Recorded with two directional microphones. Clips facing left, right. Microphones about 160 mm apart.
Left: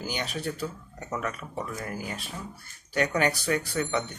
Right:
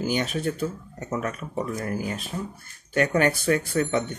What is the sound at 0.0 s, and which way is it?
Speech, 50° right (ahead or behind).